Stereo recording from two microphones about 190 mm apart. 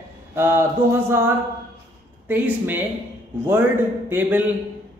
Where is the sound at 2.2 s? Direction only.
10° right (ahead or behind).